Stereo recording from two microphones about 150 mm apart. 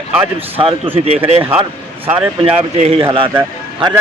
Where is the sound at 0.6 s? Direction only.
40° right (ahead or behind).